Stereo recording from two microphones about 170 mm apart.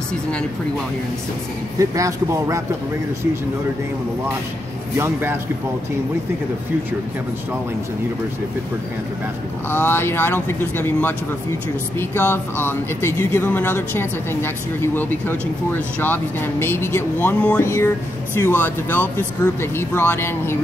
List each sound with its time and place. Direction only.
0.1 s speech: 5° left (ahead or behind)
1.8 s a man's voice: 20° right (ahead or behind)
4.9 s speech: 15° right (ahead or behind)
9.7 s speech: 15° left (ahead or behind)